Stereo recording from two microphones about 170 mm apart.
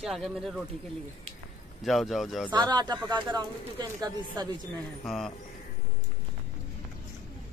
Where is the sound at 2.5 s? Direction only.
25° right (ahead or behind).